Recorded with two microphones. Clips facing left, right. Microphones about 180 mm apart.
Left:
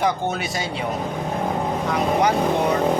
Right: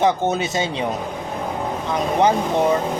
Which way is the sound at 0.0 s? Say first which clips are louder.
Right 4 dB; 20° right (ahead or behind).